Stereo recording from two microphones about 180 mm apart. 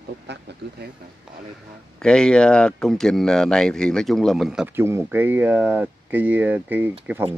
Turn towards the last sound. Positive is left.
turn(degrees=-10)  # may be behind; listen again after turning